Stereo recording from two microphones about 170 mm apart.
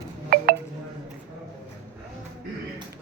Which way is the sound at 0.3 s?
60° right (ahead or behind).